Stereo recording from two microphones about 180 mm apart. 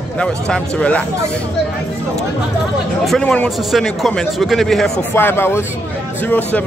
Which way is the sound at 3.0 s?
5° left (ahead or behind).